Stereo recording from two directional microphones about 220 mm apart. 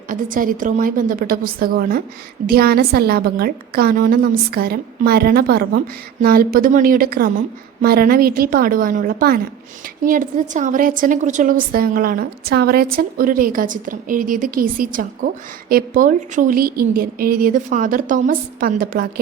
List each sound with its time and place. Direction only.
0.1 s a woman's voice: 40° right (ahead or behind)